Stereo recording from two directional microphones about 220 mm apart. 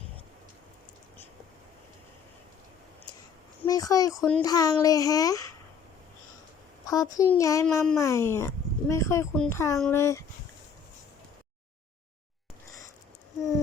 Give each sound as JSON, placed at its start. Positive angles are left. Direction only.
{"t": 3.6, "sound": "speech", "side_deg": 15}
{"t": 4.2, "sound": "speech", "side_deg": 5}
{"t": 4.4, "sound": "speech", "side_deg": 15}
{"t": 6.8, "sound": "a child's voice", "side_deg": 15}